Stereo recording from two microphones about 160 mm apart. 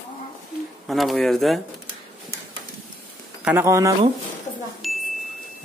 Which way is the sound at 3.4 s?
15° right (ahead or behind).